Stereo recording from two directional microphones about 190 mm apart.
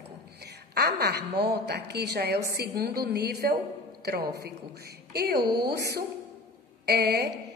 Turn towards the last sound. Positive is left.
turn(degrees=-60)  # may be behind; listen again after turning